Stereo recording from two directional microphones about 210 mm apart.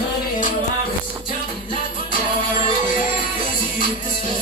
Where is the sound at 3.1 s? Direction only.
40° left (ahead or behind).